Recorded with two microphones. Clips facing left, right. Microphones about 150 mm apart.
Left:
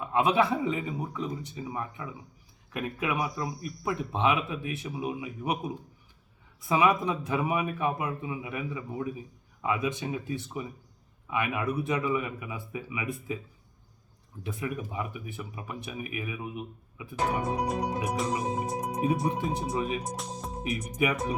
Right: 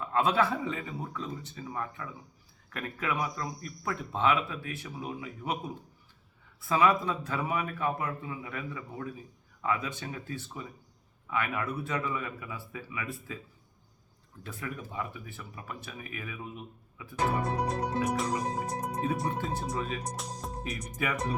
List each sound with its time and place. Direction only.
0.0 s speech: 15° left (ahead or behind)
14.4 s speech: 15° left (ahead or behind)
20.1 s speech: centre (ahead or behind)
20.8 s speech: 20° left (ahead or behind)